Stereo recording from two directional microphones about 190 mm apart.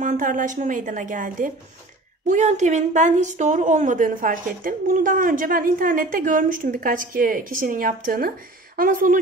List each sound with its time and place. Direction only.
0.0 s a woman's voice: 45° right (ahead or behind)